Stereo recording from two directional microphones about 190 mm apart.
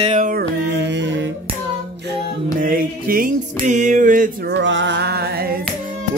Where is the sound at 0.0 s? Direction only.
40° right (ahead or behind); by 1.3 s 70° right (ahead or behind).